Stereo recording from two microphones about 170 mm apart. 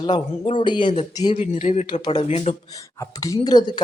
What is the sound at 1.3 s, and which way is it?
Speech, 40° left (ahead or behind).